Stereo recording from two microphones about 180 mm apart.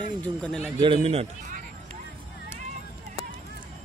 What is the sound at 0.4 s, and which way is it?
Speech, 5° left (ahead or behind).